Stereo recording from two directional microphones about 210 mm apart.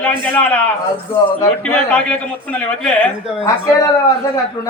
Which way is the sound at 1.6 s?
5° left (ahead or behind).